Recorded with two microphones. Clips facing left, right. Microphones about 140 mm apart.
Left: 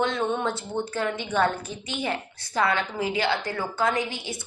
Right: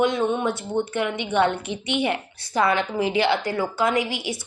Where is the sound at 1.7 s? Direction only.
70° right (ahead or behind).